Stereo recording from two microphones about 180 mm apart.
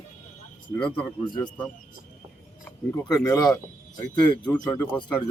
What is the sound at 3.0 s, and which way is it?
Speech, 20° left (ahead or behind).